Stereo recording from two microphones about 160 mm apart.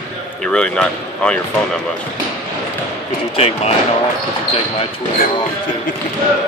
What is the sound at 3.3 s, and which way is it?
Speech, 40° left (ahead or behind).